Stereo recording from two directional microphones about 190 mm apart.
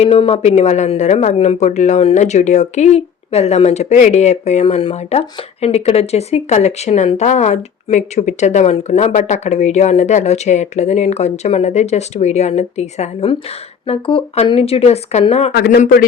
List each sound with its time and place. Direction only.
0.0 s speech: 30° left (ahead or behind)
15.5 s a man's voice: 55° left (ahead or behind)